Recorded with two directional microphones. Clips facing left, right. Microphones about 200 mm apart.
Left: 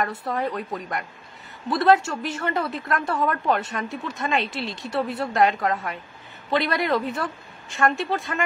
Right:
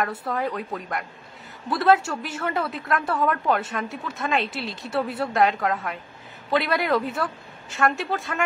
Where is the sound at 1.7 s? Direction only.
5° right (ahead or behind).